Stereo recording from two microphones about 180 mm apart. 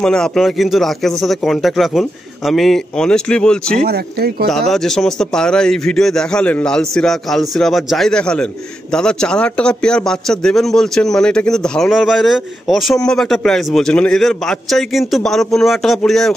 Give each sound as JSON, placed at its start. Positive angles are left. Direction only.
{"t": 0.0, "sound": "a man's voice", "side_deg": 5}
{"t": 3.8, "sound": "speech", "side_deg": -60}
{"t": 4.5, "sound": "a man's voice", "side_deg": 0}